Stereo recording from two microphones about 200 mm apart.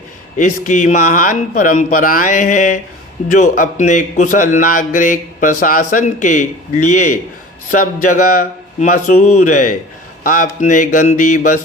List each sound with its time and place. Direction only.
0.3 s a man's voice: 40° left (ahead or behind)